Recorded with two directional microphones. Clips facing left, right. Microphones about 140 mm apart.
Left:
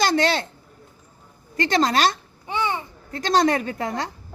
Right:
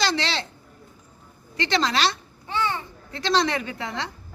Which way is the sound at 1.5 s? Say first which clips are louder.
Left 4 dB; 45° left (ahead or behind).